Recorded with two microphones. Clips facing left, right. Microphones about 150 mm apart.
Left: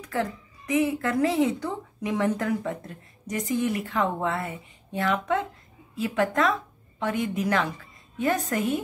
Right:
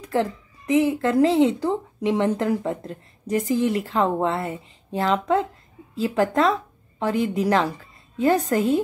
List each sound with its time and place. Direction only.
0.0 s a woman's voice: 30° right (ahead or behind)